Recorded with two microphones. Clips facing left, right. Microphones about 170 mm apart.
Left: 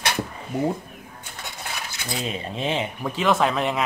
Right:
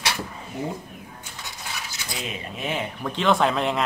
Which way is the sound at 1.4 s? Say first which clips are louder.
Left 3 dB; 55° left (ahead or behind).